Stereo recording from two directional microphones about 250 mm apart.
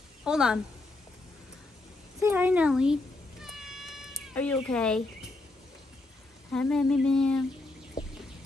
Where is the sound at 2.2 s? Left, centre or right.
Centre.